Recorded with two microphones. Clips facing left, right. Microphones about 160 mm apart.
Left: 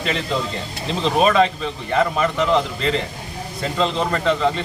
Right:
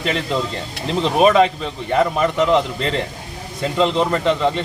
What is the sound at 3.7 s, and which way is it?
Speech, 20° right (ahead or behind).